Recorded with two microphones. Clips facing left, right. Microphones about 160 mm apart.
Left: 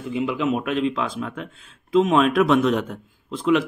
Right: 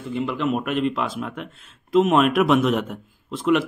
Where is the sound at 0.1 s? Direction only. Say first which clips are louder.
Left 1 dB; 5° left (ahead or behind).